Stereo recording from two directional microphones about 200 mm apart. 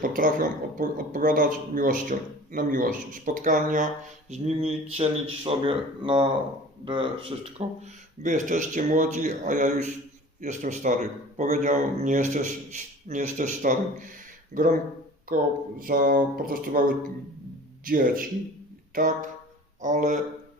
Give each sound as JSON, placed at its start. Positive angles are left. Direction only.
{"t": 0.0, "sound": "a man's voice", "side_deg": -45}
{"t": 15.8, "sound": "a man's voice", "side_deg": -45}